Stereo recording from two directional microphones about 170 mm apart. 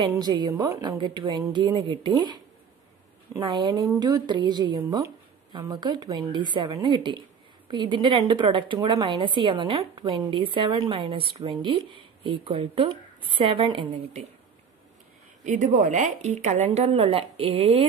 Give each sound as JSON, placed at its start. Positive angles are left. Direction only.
{"t": 0.0, "sound": "a woman's voice", "side_deg": -20}
{"t": 15.4, "sound": "a woman's voice", "side_deg": -45}